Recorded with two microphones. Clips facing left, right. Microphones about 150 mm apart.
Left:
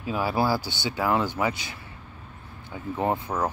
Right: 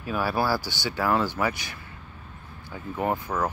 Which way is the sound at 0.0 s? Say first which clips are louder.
Left 1 dB; 20° left (ahead or behind).